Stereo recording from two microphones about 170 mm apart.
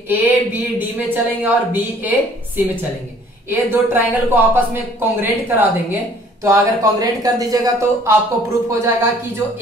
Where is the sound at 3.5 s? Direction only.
10° right (ahead or behind).